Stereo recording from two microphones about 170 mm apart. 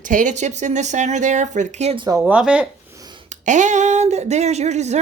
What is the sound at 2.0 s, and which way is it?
Speech, 20° right (ahead or behind).